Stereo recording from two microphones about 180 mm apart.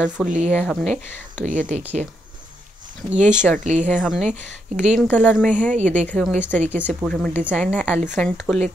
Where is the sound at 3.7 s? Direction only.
35° right (ahead or behind).